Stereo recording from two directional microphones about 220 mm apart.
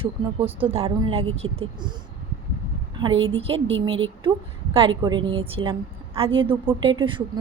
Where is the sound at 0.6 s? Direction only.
25° right (ahead or behind).